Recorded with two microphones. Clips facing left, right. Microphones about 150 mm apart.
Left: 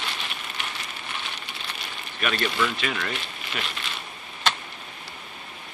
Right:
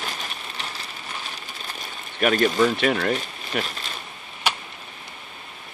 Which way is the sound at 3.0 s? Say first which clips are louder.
Right 7 dB; 40° right (ahead or behind).